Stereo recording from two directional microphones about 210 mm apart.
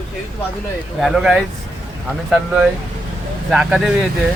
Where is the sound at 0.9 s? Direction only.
Centre (ahead or behind).